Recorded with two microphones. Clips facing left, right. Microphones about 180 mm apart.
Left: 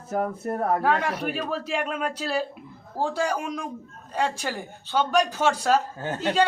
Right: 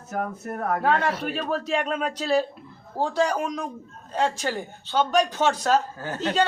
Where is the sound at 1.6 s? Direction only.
5° left (ahead or behind).